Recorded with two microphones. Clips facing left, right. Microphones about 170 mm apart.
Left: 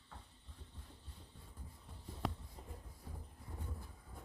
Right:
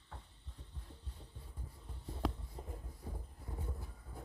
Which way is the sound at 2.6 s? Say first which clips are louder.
Right 6 dB; 40° right (ahead or behind).